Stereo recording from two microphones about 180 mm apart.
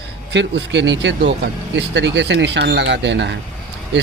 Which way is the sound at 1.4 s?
70° right (ahead or behind).